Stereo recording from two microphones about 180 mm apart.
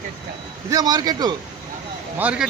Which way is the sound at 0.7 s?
20° right (ahead or behind).